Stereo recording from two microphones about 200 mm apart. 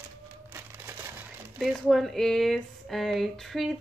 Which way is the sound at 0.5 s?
10° right (ahead or behind).